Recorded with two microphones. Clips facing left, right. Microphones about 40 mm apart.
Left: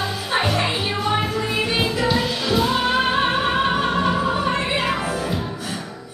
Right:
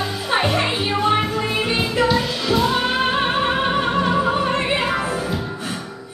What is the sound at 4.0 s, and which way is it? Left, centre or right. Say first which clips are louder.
Opera: right 2 dB; centre.